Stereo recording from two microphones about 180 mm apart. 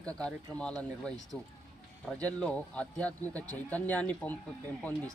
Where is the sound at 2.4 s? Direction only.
5° left (ahead or behind).